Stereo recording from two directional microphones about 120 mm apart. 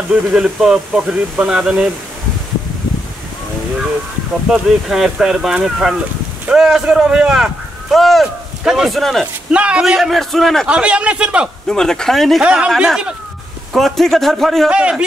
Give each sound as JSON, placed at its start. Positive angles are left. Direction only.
{"t": 0.1, "sound": "a man's voice", "side_deg": -5}
{"t": 4.5, "sound": "speech", "side_deg": -5}
{"t": 9.5, "sound": "speech", "side_deg": -10}
{"t": 10.7, "sound": "a man's voice", "side_deg": -10}
{"t": 11.6, "sound": "a man's voice", "side_deg": 5}